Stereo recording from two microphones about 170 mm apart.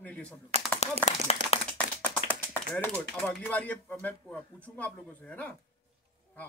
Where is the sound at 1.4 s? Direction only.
45° right (ahead or behind).